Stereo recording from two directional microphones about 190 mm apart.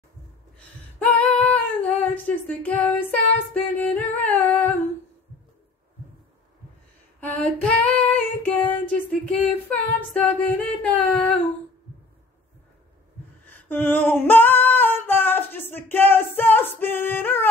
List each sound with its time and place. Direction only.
0.9 s female singing: 5° left (ahead or behind)
7.2 s female singing: 5° left (ahead or behind)
13.5 s female singing: 10° left (ahead or behind)